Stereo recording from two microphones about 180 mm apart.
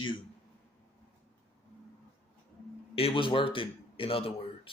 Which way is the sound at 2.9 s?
30° left (ahead or behind).